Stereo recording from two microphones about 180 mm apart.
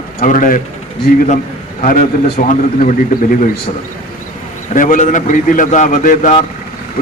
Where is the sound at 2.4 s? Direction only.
45° left (ahead or behind).